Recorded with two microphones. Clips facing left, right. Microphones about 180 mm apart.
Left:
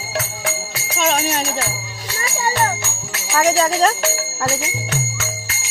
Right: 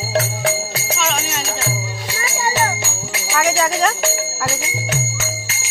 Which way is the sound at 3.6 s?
30° left (ahead or behind).